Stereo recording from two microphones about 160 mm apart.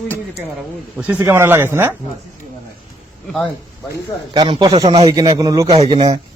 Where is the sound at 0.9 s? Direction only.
10° right (ahead or behind).